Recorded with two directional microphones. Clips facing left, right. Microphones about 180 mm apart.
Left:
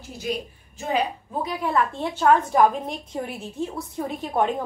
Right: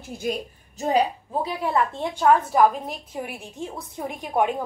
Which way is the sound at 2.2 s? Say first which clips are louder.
Even; 5° right (ahead or behind).